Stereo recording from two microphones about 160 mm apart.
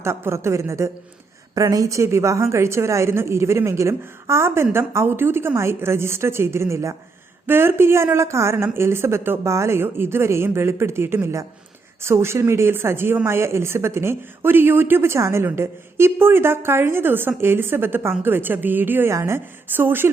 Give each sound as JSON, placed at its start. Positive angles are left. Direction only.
{"t": 0.0, "sound": "speech", "side_deg": -15}